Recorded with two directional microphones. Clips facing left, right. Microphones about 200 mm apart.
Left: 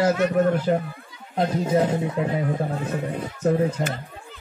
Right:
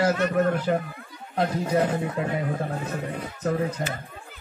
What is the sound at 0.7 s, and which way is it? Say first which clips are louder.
Speech: left 2 dB; 35° left (ahead or behind).